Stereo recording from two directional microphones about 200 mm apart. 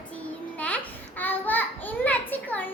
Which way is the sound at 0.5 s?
5° left (ahead or behind).